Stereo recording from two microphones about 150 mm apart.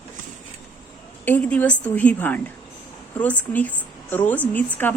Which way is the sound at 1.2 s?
10° left (ahead or behind).